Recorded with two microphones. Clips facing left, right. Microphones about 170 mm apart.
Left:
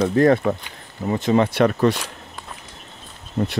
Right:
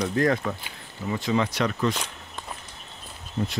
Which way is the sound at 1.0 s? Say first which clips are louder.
Left 7 dB; 45° left (ahead or behind).